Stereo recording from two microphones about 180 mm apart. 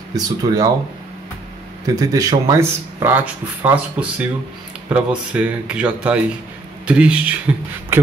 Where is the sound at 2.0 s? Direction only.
20° right (ahead or behind).